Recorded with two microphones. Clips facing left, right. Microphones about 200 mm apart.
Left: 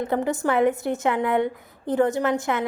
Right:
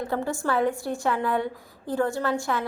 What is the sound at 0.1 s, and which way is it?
A woman's voice, 20° left (ahead or behind).